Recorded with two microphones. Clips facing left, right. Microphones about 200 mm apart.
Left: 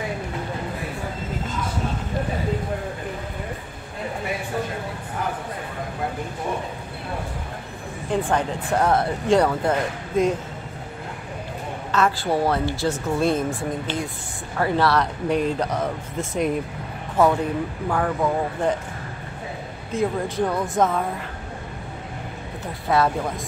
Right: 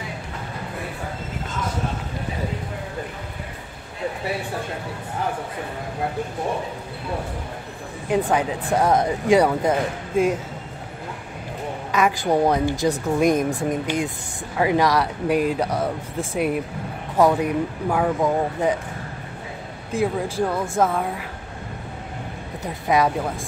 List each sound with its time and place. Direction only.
8.3 s a woman's voice: 10° right (ahead or behind)
11.9 s a woman's voice: 15° right (ahead or behind)
19.9 s a woman's voice: 10° right (ahead or behind)
22.8 s a woman's voice: 15° right (ahead or behind)